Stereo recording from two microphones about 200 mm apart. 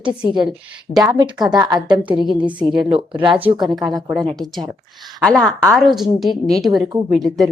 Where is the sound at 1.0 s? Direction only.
20° right (ahead or behind).